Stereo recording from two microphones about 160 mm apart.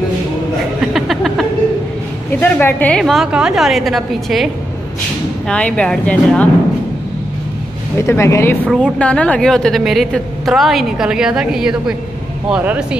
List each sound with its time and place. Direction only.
0.7 s a sound: centre (ahead or behind)
2.4 s a woman's voice: 10° left (ahead or behind)
5.5 s speech: 5° left (ahead or behind)
8.0 s speech: 15° left (ahead or behind)
8.6 s a woman's voice: 5° left (ahead or behind)